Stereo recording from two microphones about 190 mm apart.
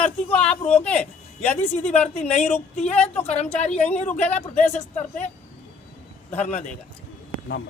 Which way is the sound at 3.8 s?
5° left (ahead or behind).